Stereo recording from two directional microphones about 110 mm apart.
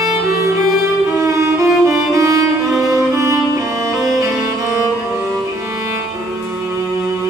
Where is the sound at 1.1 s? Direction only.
25° right (ahead or behind).